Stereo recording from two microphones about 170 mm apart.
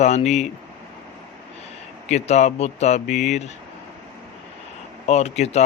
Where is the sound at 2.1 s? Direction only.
40° left (ahead or behind).